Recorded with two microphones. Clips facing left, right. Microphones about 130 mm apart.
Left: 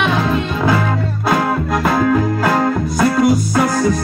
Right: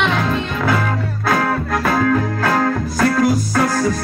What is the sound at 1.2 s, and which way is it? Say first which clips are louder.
Music: left 1 dB; 20° left (ahead or behind).